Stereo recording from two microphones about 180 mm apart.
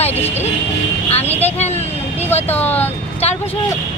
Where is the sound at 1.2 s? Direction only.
10° left (ahead or behind).